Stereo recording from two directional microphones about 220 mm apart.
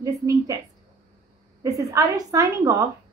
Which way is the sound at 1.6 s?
15° right (ahead or behind).